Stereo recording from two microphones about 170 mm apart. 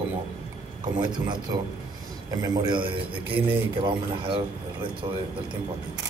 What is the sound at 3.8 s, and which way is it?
A man's voice, 30° right (ahead or behind).